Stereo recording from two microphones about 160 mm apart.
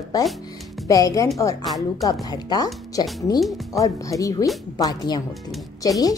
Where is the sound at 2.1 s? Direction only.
25° left (ahead or behind).